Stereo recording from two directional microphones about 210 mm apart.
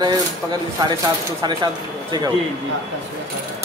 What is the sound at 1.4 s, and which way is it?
Speech, 20° right (ahead or behind).